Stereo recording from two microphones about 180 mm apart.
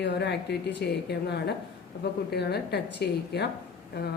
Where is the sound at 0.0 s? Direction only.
70° left (ahead or behind).